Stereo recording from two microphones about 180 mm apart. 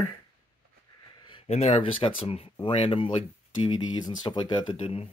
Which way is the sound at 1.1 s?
25° left (ahead or behind).